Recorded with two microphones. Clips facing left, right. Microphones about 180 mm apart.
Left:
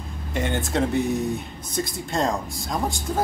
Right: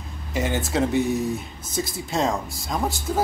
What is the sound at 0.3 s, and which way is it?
Speech, 5° right (ahead or behind).